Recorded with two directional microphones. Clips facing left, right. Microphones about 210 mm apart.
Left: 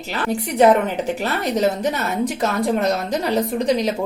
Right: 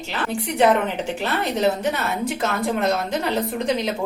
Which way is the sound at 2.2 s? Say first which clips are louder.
Left 3 dB; 35° left (ahead or behind).